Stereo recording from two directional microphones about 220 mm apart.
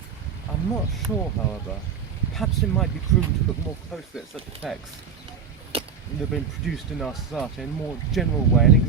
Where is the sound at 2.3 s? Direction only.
Centre (ahead or behind).